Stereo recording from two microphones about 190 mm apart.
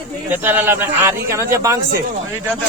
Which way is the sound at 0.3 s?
10° right (ahead or behind).